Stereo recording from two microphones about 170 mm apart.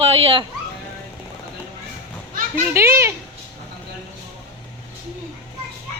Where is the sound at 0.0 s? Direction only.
35° right (ahead or behind).